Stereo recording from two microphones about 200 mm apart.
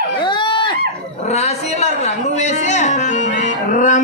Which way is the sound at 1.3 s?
35° left (ahead or behind).